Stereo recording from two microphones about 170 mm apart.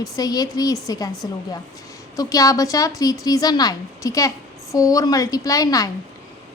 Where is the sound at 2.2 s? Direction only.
20° left (ahead or behind).